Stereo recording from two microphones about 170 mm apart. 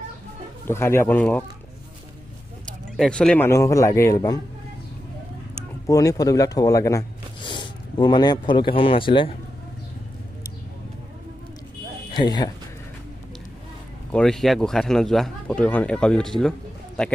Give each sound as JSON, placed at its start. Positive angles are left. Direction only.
{"t": 0.7, "sound": "a man's voice", "side_deg": 15}
{"t": 3.0, "sound": "a man's voice", "side_deg": 5}
{"t": 5.9, "sound": "speech", "side_deg": 20}
{"t": 7.4, "sound": "speech", "side_deg": 30}
{"t": 12.1, "sound": "speech", "side_deg": 25}
{"t": 14.1, "sound": "speech", "side_deg": 5}